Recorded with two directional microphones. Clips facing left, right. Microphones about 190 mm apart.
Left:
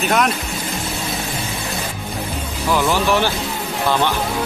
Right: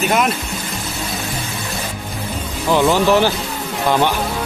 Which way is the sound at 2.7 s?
20° right (ahead or behind).